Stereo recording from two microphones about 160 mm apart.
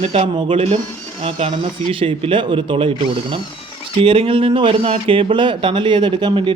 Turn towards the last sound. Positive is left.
turn(degrees=-30)  # may be behind; listen again after turning